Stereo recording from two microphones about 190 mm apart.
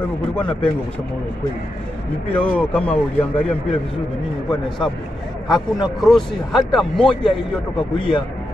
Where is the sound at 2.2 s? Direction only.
10° left (ahead or behind).